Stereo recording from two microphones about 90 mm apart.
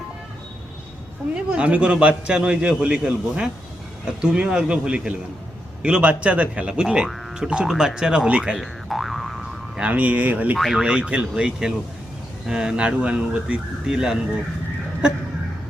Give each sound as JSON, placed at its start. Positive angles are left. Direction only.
{"t": 1.4, "sound": "a man's voice", "side_deg": -10}
{"t": 8.5, "sound": "boing", "side_deg": 0}
{"t": 9.8, "sound": "a man's voice", "side_deg": -15}
{"t": 10.6, "sound": "speech", "side_deg": 0}
{"t": 10.8, "sound": "a man's voice", "side_deg": -10}